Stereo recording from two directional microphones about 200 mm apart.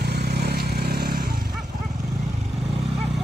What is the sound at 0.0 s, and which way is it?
Vehicle, 55° right (ahead or behind).